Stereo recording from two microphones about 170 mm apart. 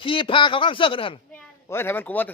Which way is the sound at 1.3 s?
15° left (ahead or behind).